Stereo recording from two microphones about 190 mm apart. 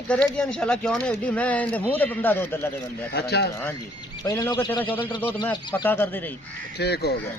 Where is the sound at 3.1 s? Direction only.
60° left (ahead or behind).